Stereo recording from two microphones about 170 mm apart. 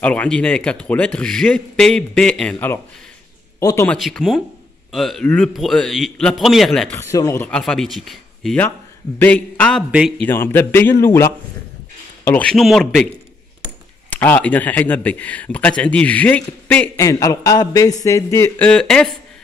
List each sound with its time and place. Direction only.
0.0 s speech: 5° left (ahead or behind)
3.9 s speech: 5° left (ahead or behind)
7.0 s speech: 20° left (ahead or behind)
9.8 s a man's voice: 5° right (ahead or behind)
10.2 s speech: 15° left (ahead or behind)
14.1 s speech: 10° left (ahead or behind)
18.7 s speech: 5° left (ahead or behind)